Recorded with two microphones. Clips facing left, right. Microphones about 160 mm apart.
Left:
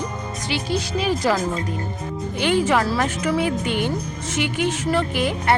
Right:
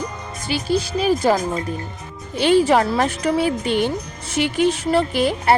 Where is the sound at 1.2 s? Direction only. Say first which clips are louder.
Right 3 dB; 30° right (ahead or behind).